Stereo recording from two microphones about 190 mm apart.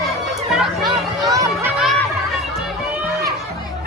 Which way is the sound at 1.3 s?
15° right (ahead or behind).